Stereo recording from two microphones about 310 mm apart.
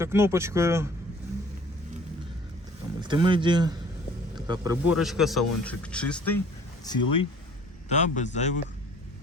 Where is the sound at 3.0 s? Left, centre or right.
Centre.